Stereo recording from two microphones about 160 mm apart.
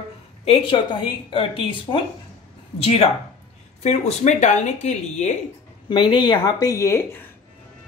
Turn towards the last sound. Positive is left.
turn(degrees=15)  # may be behind; listen again after turning